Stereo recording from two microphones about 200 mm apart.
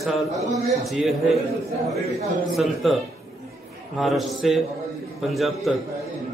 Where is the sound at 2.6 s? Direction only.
Centre (ahead or behind).